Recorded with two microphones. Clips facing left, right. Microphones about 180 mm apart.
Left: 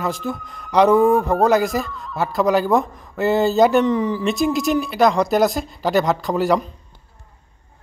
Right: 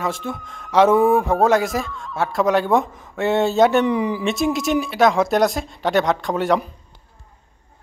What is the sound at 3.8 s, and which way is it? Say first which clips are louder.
Speech: left 1 dB; 10° right (ahead or behind).